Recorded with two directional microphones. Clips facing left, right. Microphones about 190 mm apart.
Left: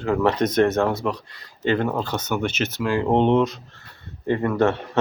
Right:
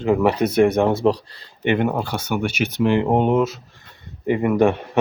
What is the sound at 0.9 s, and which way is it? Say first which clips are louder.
Speech: right 8 dB; 30° right (ahead or behind).